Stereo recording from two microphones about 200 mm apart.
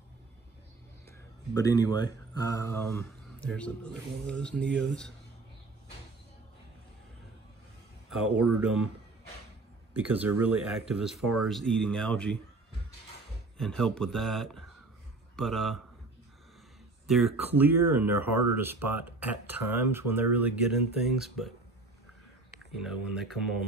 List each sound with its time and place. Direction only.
1.5 s speech: 20° left (ahead or behind)
8.1 s speech: 5° right (ahead or behind)
9.9 s speech: 5° right (ahead or behind)
13.6 s speech: centre (ahead or behind)
17.0 s speech: centre (ahead or behind)
22.7 s speech: centre (ahead or behind)